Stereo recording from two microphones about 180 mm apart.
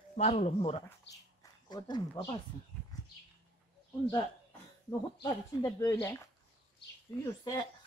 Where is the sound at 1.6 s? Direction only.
25° left (ahead or behind).